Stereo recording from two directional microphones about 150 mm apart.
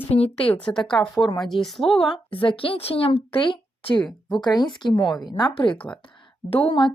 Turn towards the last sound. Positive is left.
turn(degrees=35)  # may be behind; listen again after turning